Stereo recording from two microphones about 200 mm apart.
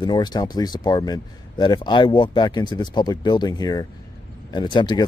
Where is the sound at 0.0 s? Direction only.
20° left (ahead or behind).